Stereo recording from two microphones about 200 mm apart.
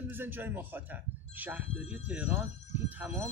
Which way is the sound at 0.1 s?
10° right (ahead or behind).